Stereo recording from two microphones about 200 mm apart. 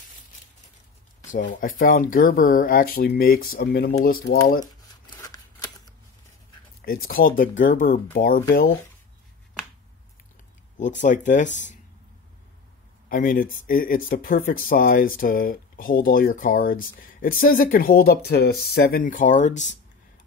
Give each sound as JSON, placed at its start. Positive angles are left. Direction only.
{"t": 1.3, "sound": "speech", "side_deg": 40}
{"t": 5.2, "sound": "scissors", "side_deg": 20}
{"t": 6.8, "sound": "speech", "side_deg": 45}
{"t": 10.8, "sound": "speech", "side_deg": 40}
{"t": 13.1, "sound": "speech", "side_deg": 45}